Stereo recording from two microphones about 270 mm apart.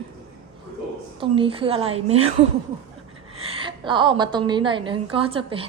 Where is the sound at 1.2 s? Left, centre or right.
Centre.